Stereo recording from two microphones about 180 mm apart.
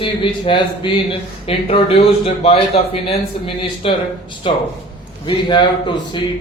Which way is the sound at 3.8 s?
30° left (ahead or behind).